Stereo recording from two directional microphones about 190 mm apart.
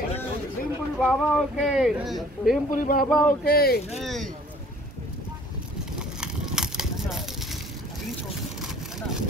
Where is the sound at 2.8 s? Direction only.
50° left (ahead or behind).